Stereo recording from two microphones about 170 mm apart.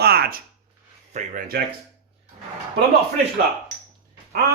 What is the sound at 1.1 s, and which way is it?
Speech, 55° right (ahead or behind).